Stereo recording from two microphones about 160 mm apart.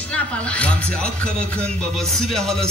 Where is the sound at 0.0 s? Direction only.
10° left (ahead or behind).